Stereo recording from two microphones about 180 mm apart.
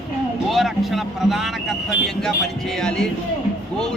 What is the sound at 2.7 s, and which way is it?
Speech, 5° left (ahead or behind).